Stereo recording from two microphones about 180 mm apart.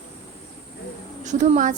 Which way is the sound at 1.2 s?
40° right (ahead or behind).